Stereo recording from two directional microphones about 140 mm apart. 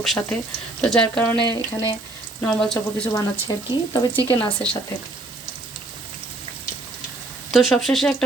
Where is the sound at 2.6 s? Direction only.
5° left (ahead or behind).